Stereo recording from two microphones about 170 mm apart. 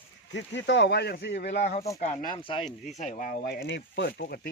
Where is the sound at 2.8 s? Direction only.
40° left (ahead or behind); by 4.4 s 75° left (ahead or behind).